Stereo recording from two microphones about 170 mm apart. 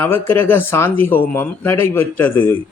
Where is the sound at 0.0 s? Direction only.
15° left (ahead or behind).